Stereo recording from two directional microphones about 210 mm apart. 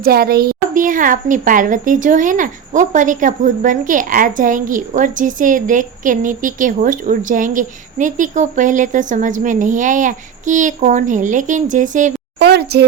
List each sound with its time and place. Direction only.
0.0 s a woman's voice: 45° right (ahead or behind)
12.4 s speech: 50° right (ahead or behind)